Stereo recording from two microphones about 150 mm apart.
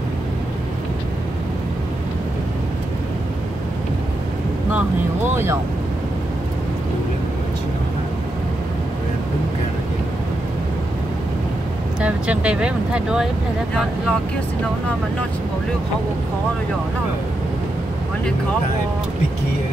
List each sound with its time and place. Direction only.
5.3 s speech: 15° right (ahead or behind)
12.0 s speech: 10° right (ahead or behind)